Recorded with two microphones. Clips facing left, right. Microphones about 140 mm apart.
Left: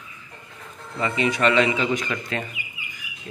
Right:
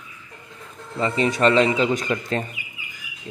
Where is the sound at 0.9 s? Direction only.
35° right (ahead or behind).